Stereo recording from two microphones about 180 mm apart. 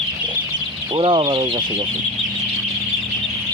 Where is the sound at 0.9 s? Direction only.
30° right (ahead or behind).